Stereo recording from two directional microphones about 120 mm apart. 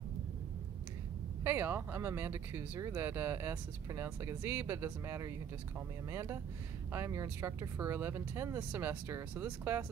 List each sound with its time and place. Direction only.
1.4 s speech: 15° right (ahead or behind)